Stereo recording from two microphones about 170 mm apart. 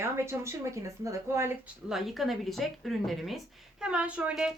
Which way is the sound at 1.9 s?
Centre (ahead or behind).